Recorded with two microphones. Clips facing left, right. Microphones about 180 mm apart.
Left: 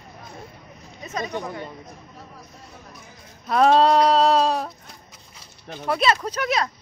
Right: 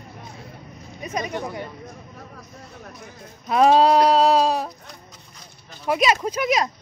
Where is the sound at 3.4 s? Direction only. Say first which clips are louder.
Right 1 dB; 5° right (ahead or behind).